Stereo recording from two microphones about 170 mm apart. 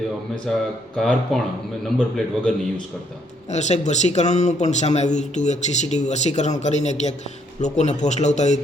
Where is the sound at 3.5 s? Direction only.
45° left (ahead or behind).